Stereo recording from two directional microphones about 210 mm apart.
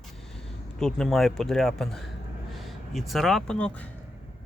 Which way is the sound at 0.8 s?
Centre (ahead or behind).